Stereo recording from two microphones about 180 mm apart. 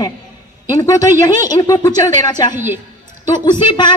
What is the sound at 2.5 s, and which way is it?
Speech, 10° right (ahead or behind).